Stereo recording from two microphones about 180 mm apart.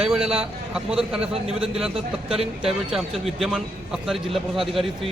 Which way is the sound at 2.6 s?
Centre (ahead or behind).